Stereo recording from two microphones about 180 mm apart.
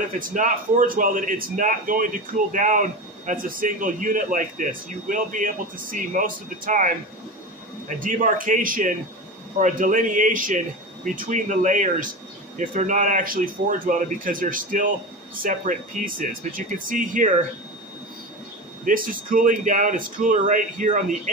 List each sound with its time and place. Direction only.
0.3 s a man's voice: 45° right (ahead or behind)
8.0 s a man's voice: 45° right (ahead or behind)
18.9 s a man's voice: 50° right (ahead or behind)